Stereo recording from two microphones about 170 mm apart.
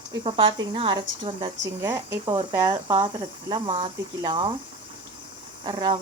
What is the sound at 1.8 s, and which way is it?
Speech, 15° right (ahead or behind).